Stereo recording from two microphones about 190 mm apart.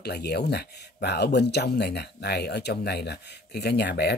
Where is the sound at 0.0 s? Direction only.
60° left (ahead or behind).